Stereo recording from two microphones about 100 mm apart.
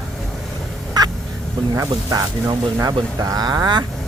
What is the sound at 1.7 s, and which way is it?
Speech, 35° right (ahead or behind).